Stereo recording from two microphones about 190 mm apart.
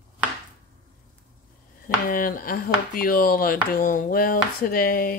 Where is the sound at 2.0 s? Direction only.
50° left (ahead or behind).